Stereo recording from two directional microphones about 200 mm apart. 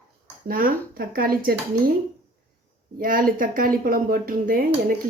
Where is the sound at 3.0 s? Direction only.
45° right (ahead or behind).